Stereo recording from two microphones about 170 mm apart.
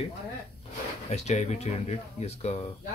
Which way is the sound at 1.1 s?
40° left (ahead or behind).